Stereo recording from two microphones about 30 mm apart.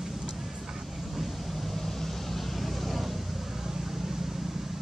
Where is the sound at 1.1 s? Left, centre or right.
Centre.